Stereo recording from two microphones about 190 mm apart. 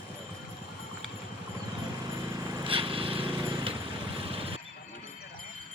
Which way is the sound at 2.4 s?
25° right (ahead or behind).